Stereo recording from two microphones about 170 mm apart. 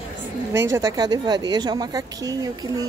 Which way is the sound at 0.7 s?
25° right (ahead or behind).